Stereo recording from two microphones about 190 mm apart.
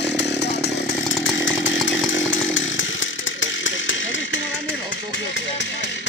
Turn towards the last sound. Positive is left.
turn(degrees=80)